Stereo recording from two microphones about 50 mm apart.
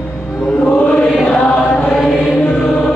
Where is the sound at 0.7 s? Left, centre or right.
Left.